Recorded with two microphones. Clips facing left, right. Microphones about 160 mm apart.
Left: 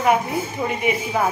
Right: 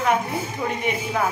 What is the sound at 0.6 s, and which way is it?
Speech, 5° left (ahead or behind).